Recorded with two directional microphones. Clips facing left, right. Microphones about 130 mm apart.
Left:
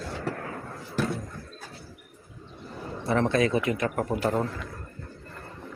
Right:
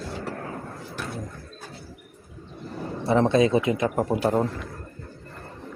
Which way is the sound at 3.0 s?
20° right (ahead or behind).